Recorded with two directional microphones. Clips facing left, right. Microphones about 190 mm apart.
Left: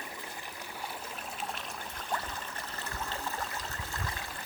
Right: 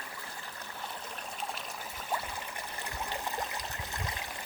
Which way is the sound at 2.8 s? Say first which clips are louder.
Right 1 dB; 15° right (ahead or behind).